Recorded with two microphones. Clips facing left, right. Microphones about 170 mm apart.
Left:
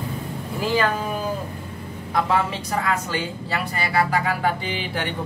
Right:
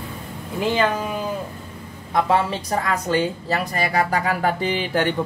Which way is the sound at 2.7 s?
35° right (ahead or behind).